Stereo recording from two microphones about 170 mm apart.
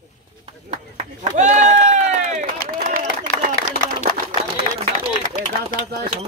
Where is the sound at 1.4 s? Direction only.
45° right (ahead or behind).